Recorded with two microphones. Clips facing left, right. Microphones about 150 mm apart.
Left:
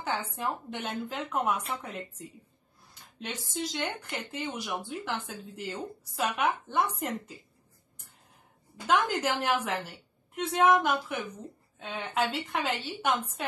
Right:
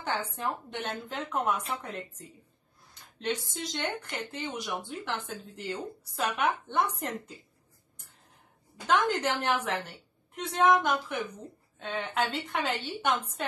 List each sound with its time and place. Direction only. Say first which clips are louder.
0.5 s speech: left 1 dB; centre (ahead or behind)
2.9 s speech: right 7 dB; 5° left (ahead or behind)
8.8 s speech: even; 5° left (ahead or behind)